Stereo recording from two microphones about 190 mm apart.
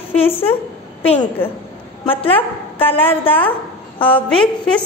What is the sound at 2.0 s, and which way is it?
Speech, 30° left (ahead or behind).